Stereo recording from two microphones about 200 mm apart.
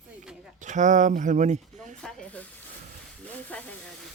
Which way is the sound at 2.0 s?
5° left (ahead or behind).